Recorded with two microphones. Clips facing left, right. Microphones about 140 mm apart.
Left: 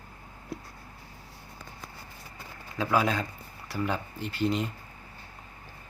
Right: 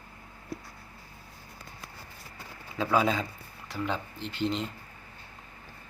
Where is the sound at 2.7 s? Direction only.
Centre (ahead or behind).